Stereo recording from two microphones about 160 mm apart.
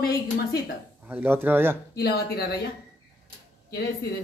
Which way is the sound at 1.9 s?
85° left.